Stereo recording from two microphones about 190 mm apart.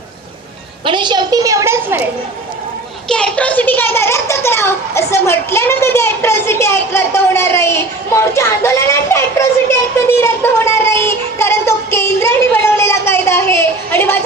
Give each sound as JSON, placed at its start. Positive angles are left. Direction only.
{"t": 0.9, "sound": "a woman's voice", "side_deg": -25}
{"t": 3.1, "sound": "a child's voice", "side_deg": 5}